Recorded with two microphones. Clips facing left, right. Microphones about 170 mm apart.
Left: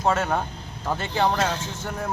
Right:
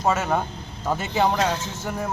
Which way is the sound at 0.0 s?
5° right (ahead or behind).